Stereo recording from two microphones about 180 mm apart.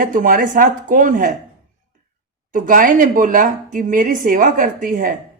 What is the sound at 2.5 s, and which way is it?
Speech, 50° right (ahead or behind).